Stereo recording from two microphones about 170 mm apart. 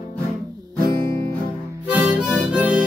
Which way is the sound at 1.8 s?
5° right (ahead or behind).